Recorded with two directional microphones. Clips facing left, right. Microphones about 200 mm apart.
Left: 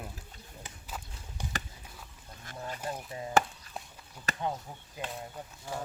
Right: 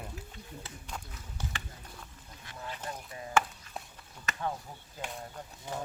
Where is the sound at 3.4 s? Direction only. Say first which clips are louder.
Left 2 dB; 35° left (ahead or behind).